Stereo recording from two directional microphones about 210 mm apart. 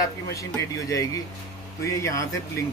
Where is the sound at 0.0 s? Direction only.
15° left (ahead or behind).